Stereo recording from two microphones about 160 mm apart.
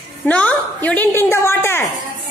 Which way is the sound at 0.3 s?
10° left (ahead or behind).